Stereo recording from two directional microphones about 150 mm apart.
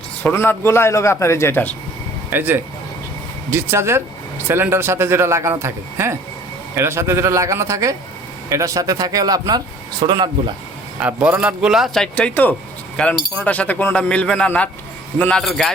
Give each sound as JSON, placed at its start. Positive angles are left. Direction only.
{"t": 0.2, "sound": "a man's voice", "side_deg": 10}
{"t": 2.3, "sound": "speech", "side_deg": -15}
{"t": 11.0, "sound": "a man's voice", "side_deg": -10}